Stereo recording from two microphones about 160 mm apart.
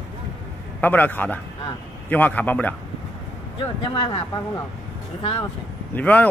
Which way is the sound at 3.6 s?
30° left (ahead or behind).